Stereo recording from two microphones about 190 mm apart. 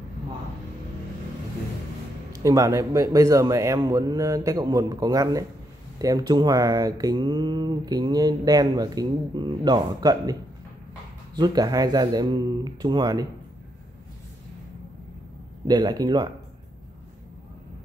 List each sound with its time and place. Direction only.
2.3 s a man's voice: 15° right (ahead or behind)
11.3 s speech: 20° right (ahead or behind)
15.6 s speech: 20° right (ahead or behind)